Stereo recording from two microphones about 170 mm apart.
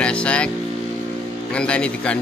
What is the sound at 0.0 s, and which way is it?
Music, 5° left (ahead or behind).